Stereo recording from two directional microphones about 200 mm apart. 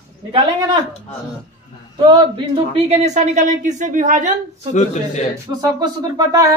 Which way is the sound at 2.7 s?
35° right (ahead or behind).